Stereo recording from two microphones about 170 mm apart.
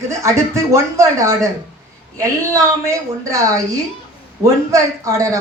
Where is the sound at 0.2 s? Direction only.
20° right (ahead or behind).